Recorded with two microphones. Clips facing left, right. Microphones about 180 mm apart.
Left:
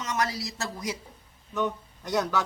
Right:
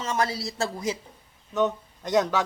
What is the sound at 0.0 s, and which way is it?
A man's voice, 30° right (ahead or behind).